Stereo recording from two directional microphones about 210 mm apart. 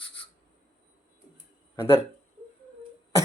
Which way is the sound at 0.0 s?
25° left (ahead or behind).